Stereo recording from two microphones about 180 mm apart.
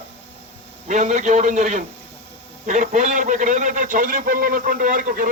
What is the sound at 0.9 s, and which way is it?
A man's voice, 40° right (ahead or behind).